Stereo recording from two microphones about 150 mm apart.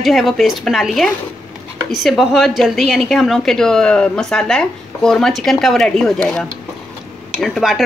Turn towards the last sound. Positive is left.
turn(degrees=0)  # may be behind; listen again after turning